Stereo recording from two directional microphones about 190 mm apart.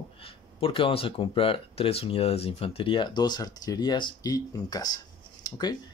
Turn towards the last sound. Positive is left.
turn(degrees=20)  # may be behind; listen again after turning